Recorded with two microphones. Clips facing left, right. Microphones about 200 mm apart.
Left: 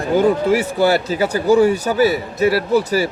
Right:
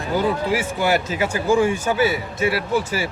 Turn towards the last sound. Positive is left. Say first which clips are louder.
# left 6 dB
turn(degrees=40)  # may be behind; listen again after turning